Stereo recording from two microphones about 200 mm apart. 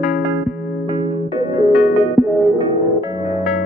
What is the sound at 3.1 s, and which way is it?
Music, 20° right (ahead or behind).